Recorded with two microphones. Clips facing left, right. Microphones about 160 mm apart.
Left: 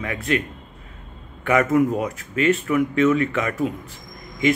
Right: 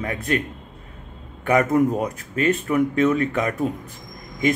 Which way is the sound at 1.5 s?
40° right (ahead or behind).